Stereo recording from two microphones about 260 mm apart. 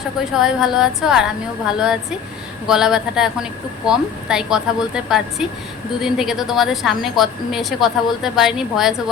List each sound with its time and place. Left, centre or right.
0.3 s a woman's voice: centre